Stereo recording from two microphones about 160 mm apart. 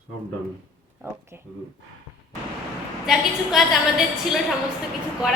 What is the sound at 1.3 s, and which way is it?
Speech, 15° right (ahead or behind).